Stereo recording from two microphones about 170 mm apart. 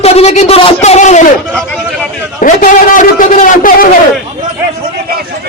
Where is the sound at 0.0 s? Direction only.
35° left (ahead or behind).